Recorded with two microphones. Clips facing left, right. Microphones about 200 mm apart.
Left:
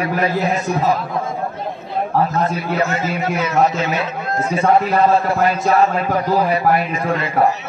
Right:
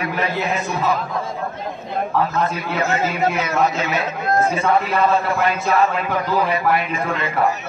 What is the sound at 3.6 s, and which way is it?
Speech, 40° left (ahead or behind).